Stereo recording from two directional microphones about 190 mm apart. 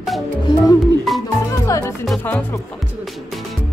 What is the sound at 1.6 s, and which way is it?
Music, 15° left (ahead or behind).